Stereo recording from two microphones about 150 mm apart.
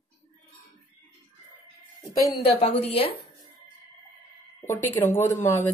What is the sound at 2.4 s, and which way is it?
Speech, 40° left (ahead or behind).